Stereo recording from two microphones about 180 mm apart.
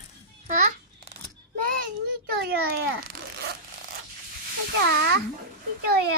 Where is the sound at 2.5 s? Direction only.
60° right (ahead or behind).